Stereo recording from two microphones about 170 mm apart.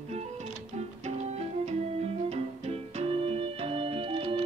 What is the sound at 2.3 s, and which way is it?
Organ, 35° right (ahead or behind).